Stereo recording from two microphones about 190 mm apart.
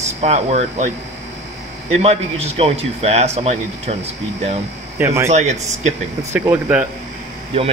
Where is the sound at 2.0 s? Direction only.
35° right (ahead or behind).